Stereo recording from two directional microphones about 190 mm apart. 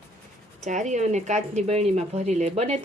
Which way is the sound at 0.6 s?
40° right (ahead or behind).